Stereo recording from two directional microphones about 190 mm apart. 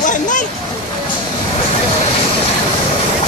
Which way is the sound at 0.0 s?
40° left (ahead or behind).